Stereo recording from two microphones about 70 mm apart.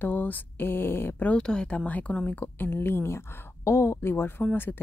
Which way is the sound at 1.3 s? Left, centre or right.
Centre.